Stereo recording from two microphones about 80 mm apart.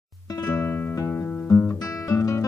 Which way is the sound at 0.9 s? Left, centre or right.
Left.